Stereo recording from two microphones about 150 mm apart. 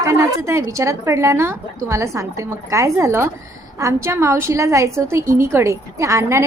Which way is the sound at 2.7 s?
20° right (ahead or behind).